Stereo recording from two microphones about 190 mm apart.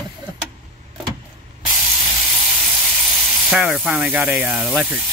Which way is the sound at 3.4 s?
5° right (ahead or behind).